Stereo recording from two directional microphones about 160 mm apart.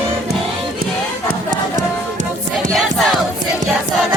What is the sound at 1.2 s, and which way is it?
Run, 55° right (ahead or behind).